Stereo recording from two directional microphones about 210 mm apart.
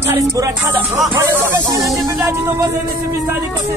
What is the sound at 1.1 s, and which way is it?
Speech, 20° right (ahead or behind).